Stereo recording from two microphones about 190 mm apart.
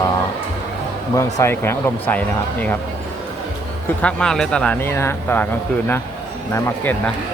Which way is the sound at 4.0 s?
5° left (ahead or behind).